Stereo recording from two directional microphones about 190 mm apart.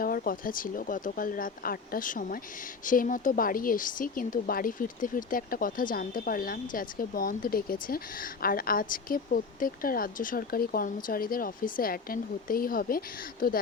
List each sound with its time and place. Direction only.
0.0 s speech: 50° left (ahead or behind)